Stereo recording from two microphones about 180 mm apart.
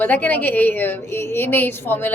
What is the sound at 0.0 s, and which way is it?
Speech, 10° left (ahead or behind).